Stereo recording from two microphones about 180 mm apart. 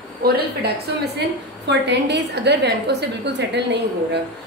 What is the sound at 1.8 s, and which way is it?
A woman's voice, 70° right (ahead or behind).